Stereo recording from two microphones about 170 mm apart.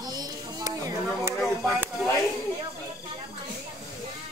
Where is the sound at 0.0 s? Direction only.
20° right (ahead or behind).